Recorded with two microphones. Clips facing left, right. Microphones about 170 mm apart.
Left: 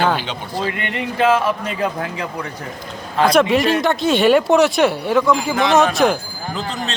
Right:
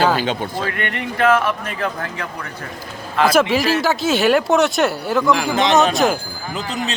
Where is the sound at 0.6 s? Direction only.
15° left (ahead or behind).